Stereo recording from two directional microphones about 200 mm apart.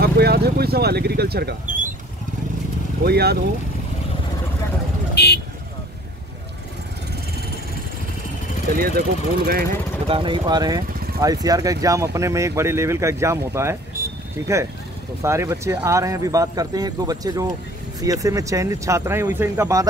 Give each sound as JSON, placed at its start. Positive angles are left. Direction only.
{"t": 0.0, "sound": "speech", "side_deg": -55}
{"t": 3.0, "sound": "speech", "side_deg": -55}
{"t": 5.1, "sound": "vehicle", "side_deg": 55}
{"t": 8.7, "sound": "speech", "side_deg": -45}
{"t": 10.0, "sound": "speech", "side_deg": -25}
{"t": 15.2, "sound": "speech", "side_deg": -15}